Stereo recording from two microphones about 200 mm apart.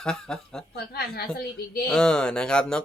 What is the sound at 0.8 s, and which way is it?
A child's voice, 50° left (ahead or behind).